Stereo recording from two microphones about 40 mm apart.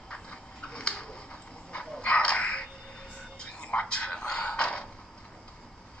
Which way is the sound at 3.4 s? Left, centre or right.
Left.